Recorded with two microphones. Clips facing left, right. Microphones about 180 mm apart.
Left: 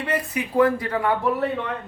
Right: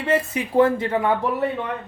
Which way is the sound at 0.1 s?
25° right (ahead or behind).